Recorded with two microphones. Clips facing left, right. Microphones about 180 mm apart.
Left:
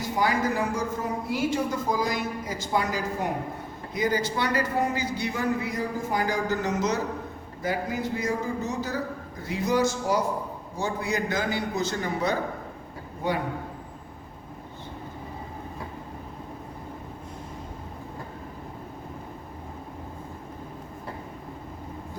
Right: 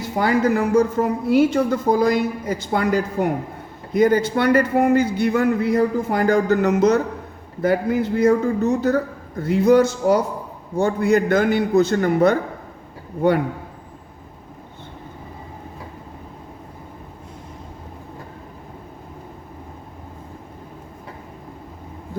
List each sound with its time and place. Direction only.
0.2 s a woman's voice: 60° right (ahead or behind)